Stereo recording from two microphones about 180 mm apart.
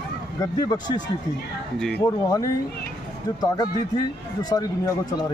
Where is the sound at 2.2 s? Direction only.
20° left (ahead or behind).